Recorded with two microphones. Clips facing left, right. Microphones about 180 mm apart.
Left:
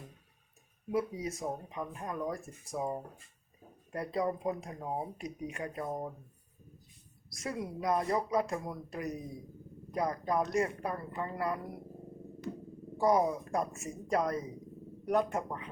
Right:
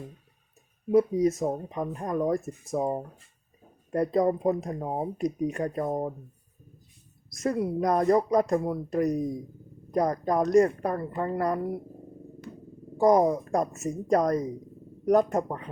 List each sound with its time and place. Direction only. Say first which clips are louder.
0.9 s speech: right 12 dB; 40° right (ahead or behind)
7.3 s speech: right 11 dB; 45° right (ahead or behind)
13.0 s speech: right 7 dB; 40° right (ahead or behind)